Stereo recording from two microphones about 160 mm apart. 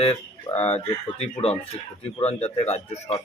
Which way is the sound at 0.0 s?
40° left (ahead or behind).